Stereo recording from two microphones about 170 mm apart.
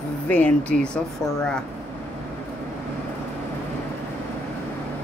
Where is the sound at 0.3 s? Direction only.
10° left (ahead or behind).